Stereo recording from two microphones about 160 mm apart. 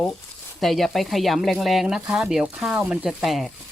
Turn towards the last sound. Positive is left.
turn(degrees=0)  # may be behind; listen again after turning